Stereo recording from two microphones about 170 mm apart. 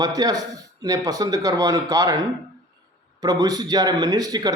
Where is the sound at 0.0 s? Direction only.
20° right (ahead or behind).